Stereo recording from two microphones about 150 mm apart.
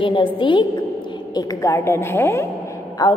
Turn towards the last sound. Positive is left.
turn(degrees=20)  # may be behind; listen again after turning